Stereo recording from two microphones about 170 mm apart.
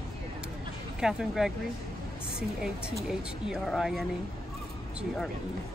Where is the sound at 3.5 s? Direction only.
Centre (ahead or behind).